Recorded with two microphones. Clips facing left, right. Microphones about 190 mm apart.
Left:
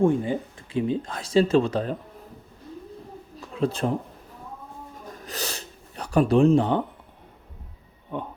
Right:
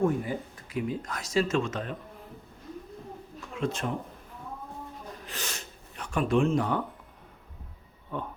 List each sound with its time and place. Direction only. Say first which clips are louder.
0.0 s speech: left 6 dB; 25° left (ahead or behind)
3.5 s speech: left 6 dB; 35° left (ahead or behind)
5.1 s speech: left 8 dB; 40° left (ahead or behind)
8.1 s speech: left 3 dB; 20° left (ahead or behind)